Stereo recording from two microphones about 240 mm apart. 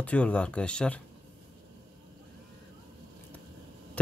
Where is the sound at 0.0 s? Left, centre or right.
Centre.